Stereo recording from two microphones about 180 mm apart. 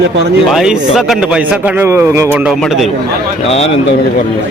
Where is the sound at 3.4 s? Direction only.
35° left (ahead or behind).